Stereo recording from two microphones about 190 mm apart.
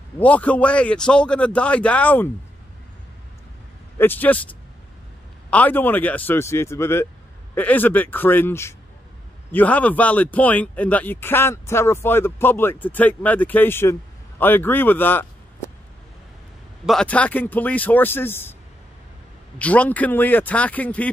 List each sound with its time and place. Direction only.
0.2 s speech: 5° left (ahead or behind)
4.0 s a man's voice: 10° left (ahead or behind)
16.8 s speech: 5° left (ahead or behind)
19.6 s speech: 5° left (ahead or behind)